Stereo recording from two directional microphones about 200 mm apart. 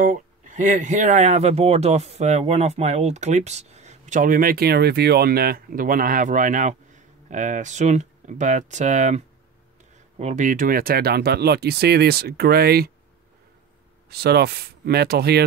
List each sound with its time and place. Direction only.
0.0 s speech: 40° right (ahead or behind)
14.0 s speech: 55° right (ahead or behind)